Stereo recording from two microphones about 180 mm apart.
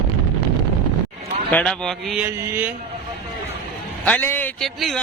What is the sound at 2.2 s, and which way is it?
Mantra, 15° right (ahead or behind).